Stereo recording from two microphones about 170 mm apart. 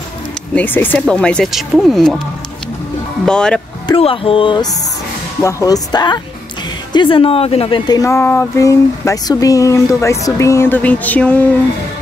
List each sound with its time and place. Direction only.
0.6 s speech: 10° left (ahead or behind)
3.3 s speech: 5° left (ahead or behind)
3.8 s speech: 30° left (ahead or behind)
5.4 s speech: 20° left (ahead or behind)